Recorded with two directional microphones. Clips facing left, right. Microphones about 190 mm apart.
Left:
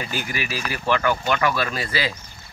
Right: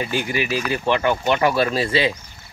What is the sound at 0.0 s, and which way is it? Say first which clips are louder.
Speech: right 6 dB; 20° right (ahead or behind).